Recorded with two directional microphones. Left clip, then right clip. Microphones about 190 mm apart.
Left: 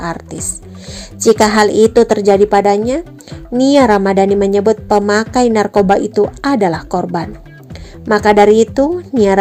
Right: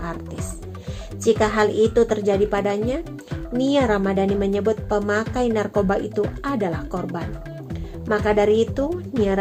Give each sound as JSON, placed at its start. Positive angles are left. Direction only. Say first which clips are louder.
{"t": 0.0, "sound": "a woman's voice", "louder": "left 9 dB", "side_deg": 40}
{"t": 9.1, "sound": "speech", "louder": "left 10 dB", "side_deg": 0}